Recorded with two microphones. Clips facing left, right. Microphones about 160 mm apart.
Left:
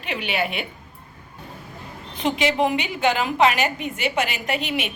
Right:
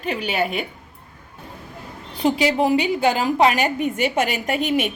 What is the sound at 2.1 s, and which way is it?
A woman's voice, 35° right (ahead or behind).